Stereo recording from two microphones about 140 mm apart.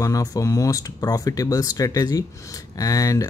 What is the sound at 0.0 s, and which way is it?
Speech, 25° left (ahead or behind).